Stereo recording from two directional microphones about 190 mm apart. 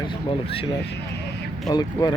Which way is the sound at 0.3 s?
30° left (ahead or behind).